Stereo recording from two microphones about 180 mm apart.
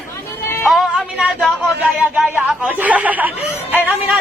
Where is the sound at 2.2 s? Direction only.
5° right (ahead or behind).